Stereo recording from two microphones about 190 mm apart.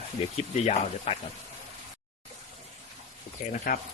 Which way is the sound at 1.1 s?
30° left (ahead or behind).